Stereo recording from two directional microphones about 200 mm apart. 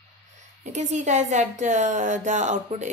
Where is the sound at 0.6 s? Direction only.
35° right (ahead or behind).